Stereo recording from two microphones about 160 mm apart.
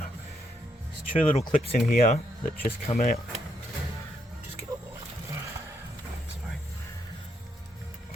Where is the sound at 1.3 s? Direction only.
40° left (ahead or behind).